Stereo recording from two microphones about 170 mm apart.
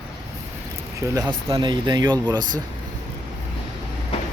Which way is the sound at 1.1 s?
20° right (ahead or behind).